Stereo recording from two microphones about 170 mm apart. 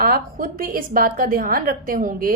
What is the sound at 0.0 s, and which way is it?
A woman's voice, 55° right (ahead or behind).